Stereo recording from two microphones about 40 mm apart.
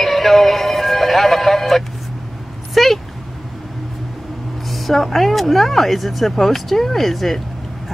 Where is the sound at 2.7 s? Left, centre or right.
Centre.